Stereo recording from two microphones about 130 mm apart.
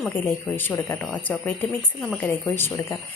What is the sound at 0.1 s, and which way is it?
Speech, 15° left (ahead or behind).